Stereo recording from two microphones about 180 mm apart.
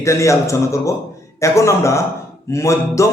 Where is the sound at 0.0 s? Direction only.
15° left (ahead or behind).